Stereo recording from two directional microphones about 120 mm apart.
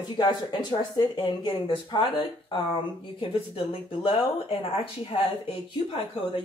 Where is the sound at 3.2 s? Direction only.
45° left (ahead or behind).